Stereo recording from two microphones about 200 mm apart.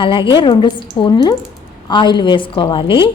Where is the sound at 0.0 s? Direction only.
25° left (ahead or behind).